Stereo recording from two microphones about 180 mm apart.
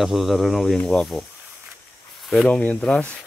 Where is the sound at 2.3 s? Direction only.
5° left (ahead or behind).